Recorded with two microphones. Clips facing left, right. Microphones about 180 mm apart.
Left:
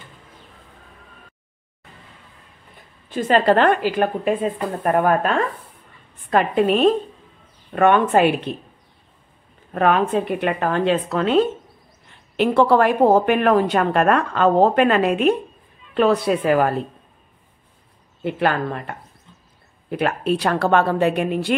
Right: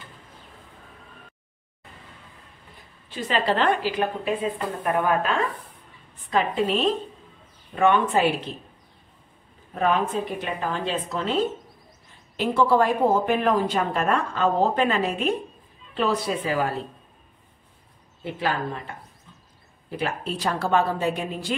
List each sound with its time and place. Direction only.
3.1 s a woman's voice: 50° left (ahead or behind)
9.8 s a woman's voice: 65° left (ahead or behind)
18.2 s a woman's voice: 60° left (ahead or behind)